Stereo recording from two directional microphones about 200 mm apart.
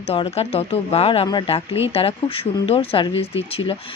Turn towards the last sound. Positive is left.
turn(degrees=30)  # may be behind; listen again after turning